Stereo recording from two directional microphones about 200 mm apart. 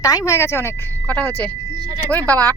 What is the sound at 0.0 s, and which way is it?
Speech, 15° left (ahead or behind).